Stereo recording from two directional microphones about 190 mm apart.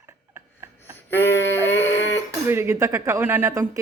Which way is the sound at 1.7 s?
15° left (ahead or behind).